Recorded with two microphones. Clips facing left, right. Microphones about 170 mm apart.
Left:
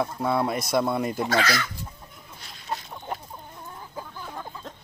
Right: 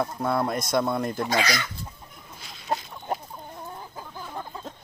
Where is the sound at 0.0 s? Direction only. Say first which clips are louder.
Left 1 dB; 5° left (ahead or behind).